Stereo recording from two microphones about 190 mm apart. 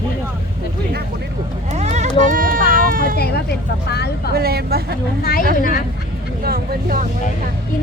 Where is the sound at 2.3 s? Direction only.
45° right (ahead or behind).